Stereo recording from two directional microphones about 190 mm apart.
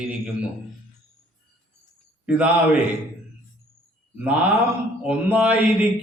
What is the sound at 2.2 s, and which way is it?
Speech, 5° right (ahead or behind).